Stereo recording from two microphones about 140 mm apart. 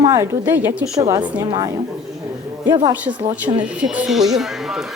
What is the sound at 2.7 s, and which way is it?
Speech, 25° right (ahead or behind).